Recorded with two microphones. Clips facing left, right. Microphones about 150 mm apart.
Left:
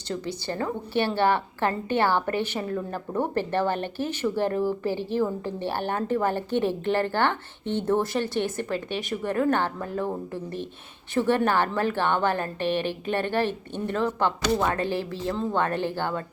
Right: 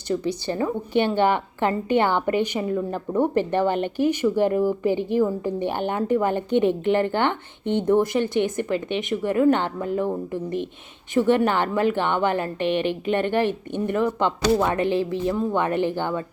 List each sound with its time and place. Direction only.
0.1 s a woman's voice: 20° right (ahead or behind)